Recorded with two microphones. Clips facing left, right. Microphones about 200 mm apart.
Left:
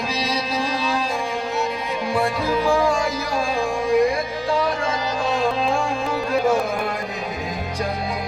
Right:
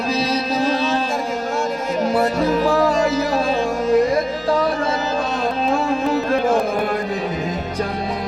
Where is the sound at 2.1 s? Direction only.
40° right (ahead or behind).